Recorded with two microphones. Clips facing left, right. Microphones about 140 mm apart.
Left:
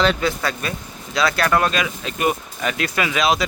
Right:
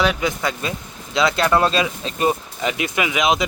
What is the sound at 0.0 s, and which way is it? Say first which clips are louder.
Speech: left 1 dB; 15° right (ahead or behind).